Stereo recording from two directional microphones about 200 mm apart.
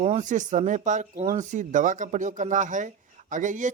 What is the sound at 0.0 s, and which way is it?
Speech, 35° right (ahead or behind).